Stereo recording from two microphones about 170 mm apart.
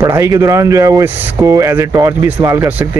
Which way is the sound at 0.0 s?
15° right (ahead or behind).